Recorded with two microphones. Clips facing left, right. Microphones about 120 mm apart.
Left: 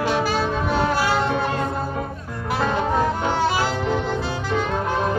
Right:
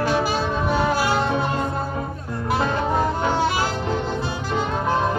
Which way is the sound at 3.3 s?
15° right (ahead or behind).